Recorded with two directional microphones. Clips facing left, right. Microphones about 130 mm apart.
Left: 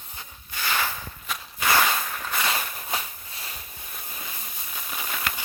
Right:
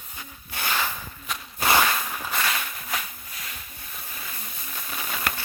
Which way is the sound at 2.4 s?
25° left (ahead or behind).